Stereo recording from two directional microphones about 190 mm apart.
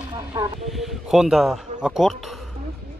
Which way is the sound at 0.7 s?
Centre (ahead or behind).